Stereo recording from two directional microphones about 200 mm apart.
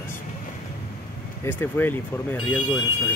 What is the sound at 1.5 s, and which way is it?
Speech, 10° left (ahead or behind).